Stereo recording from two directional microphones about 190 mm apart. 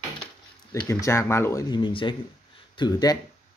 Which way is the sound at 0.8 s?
15° left (ahead or behind).